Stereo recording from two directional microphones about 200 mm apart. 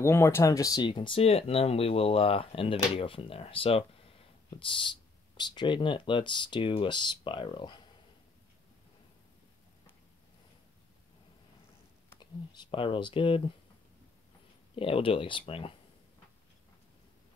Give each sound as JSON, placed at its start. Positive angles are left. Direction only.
{"t": 0.0, "sound": "speech", "side_deg": 10}
{"t": 12.2, "sound": "speech", "side_deg": 25}
{"t": 14.8, "sound": "speech", "side_deg": 25}